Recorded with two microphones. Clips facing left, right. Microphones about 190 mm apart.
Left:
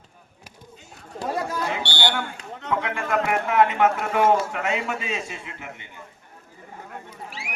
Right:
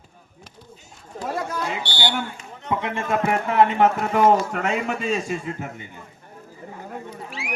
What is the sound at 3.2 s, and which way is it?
A man's voice, 35° right (ahead or behind).